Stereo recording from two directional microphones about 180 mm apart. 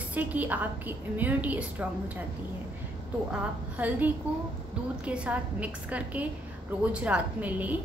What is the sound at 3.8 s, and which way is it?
A woman's voice, 10° right (ahead or behind).